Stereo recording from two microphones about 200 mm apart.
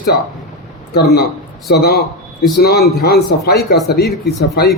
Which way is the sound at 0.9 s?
55° left (ahead or behind).